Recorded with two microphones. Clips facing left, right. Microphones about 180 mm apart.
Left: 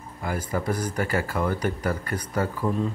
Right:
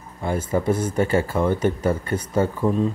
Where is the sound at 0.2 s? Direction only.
25° right (ahead or behind).